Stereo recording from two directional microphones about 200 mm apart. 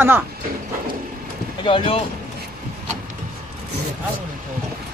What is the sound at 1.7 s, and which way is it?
Speech, 25° left (ahead or behind).